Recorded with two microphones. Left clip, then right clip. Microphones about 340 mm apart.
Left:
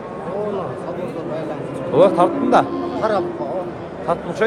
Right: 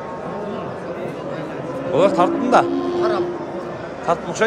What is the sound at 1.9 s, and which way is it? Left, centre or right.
Speech, centre.